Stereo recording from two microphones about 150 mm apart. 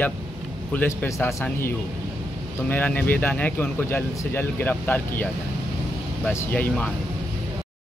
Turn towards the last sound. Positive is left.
turn(degrees=10)  # may be behind; listen again after turning